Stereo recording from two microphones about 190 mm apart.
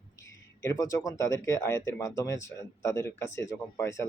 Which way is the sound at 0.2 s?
15° left (ahead or behind).